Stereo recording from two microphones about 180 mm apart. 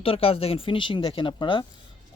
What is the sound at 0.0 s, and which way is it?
Speech, 30° left (ahead or behind).